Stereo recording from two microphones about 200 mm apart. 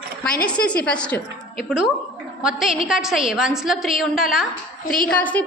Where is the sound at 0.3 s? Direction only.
5° left (ahead or behind).